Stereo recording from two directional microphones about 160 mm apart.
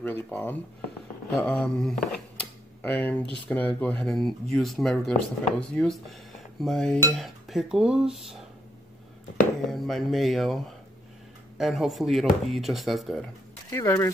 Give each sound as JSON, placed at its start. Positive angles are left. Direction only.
{"t": 0.0, "sound": "speech", "side_deg": 10}
{"t": 2.1, "sound": "a sound", "side_deg": 5}
{"t": 3.4, "sound": "speech", "side_deg": 10}
{"t": 9.7, "sound": "speech", "side_deg": 0}
{"t": 13.7, "sound": "speech", "side_deg": 20}